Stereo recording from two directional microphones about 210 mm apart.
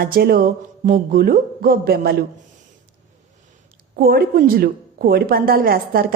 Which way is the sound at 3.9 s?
45° right (ahead or behind).